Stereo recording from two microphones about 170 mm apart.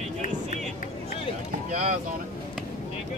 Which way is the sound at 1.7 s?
45° right (ahead or behind).